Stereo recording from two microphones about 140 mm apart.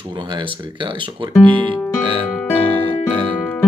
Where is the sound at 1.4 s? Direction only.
10° left (ahead or behind).